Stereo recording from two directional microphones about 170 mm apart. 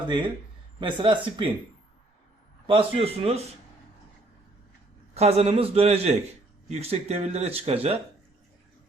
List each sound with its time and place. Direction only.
0.8 s a man's voice: 30° right (ahead or behind)
2.6 s speech: 35° right (ahead or behind)
5.1 s speech: 40° right (ahead or behind)